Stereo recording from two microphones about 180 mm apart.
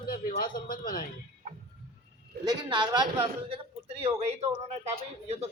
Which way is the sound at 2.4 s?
25° right (ahead or behind).